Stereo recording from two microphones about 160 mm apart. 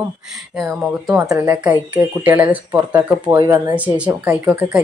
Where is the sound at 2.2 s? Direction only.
10° right (ahead or behind).